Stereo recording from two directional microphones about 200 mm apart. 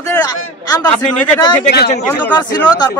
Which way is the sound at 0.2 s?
20° left (ahead or behind).